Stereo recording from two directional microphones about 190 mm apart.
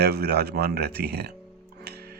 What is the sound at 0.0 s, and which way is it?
Speech, 55° right (ahead or behind).